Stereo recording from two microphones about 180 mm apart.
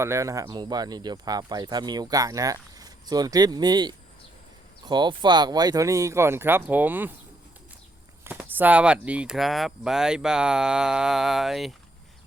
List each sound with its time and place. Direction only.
0.0 s speech: 15° right (ahead or behind)
8.2 s speech: 10° right (ahead or behind)